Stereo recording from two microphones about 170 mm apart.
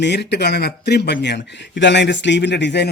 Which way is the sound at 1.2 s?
90° left.